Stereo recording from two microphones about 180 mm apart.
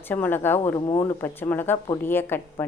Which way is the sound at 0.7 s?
20° left (ahead or behind).